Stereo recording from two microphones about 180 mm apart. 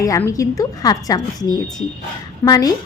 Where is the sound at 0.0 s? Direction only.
20° left (ahead or behind).